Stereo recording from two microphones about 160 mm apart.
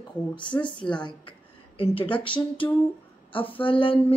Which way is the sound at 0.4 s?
30° left (ahead or behind).